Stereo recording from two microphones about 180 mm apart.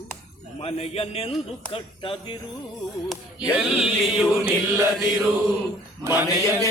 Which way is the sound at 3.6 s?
Centre (ahead or behind).